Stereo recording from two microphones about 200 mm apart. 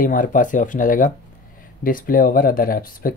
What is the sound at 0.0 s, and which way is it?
Speech, 40° left (ahead or behind).